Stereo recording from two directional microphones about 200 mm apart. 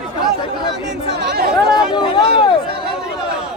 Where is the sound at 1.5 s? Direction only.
5° right (ahead or behind).